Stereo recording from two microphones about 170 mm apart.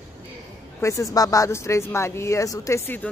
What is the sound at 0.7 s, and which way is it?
Speech, 20° left (ahead or behind).